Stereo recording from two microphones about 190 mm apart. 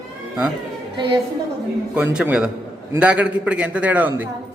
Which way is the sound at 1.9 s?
10° right (ahead or behind).